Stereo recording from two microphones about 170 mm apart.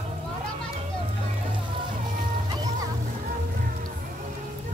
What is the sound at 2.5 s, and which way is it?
Music, 25° right (ahead or behind).